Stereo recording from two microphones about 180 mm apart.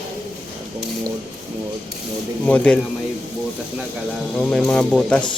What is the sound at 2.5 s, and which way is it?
Speech, 10° left (ahead or behind).